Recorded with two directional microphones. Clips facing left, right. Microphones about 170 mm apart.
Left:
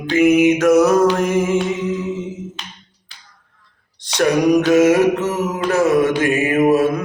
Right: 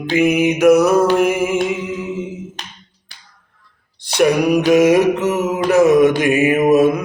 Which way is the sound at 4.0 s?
10° right (ahead or behind).